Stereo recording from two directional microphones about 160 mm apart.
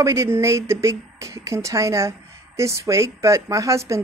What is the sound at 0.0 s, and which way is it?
Speech, 20° right (ahead or behind).